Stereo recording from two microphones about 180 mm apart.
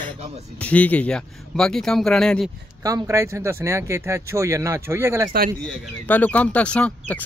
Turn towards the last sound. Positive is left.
turn(degrees=5)  # may be behind; listen again after turning